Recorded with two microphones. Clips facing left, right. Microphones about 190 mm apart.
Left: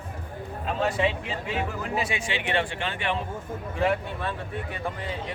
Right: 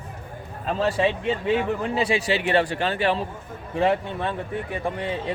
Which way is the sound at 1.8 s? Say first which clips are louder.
Right 6 dB; 30° right (ahead or behind).